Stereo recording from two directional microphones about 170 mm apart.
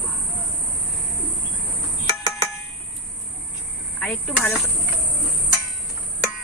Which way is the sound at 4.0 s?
5° left (ahead or behind).